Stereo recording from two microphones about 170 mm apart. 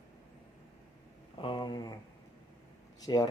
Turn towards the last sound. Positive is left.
turn(degrees=20)  # may be behind; listen again after turning